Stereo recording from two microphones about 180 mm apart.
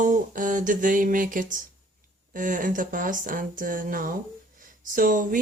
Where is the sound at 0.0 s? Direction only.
45° right (ahead or behind).